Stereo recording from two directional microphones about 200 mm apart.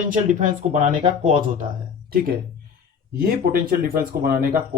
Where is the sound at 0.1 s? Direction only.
40° right (ahead or behind).